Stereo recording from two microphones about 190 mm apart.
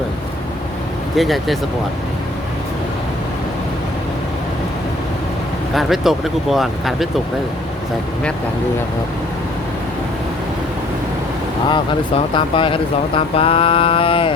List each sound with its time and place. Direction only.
1.1 s speech: centre (ahead or behind)
5.7 s speech: centre (ahead or behind)
11.7 s speech: 25° left (ahead or behind)